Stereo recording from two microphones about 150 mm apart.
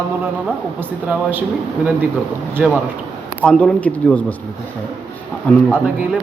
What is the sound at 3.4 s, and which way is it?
Speech, 5° left (ahead or behind).